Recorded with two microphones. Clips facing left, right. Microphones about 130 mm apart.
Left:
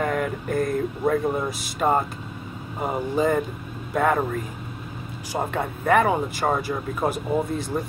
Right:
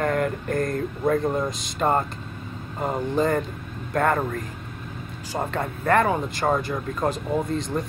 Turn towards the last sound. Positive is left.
turn(degrees=10)  # may be behind; listen again after turning